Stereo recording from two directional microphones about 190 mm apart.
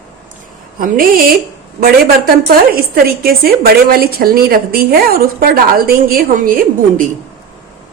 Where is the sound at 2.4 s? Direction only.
55° right (ahead or behind).